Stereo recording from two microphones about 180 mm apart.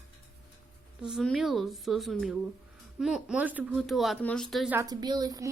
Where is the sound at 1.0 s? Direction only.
Centre (ahead or behind).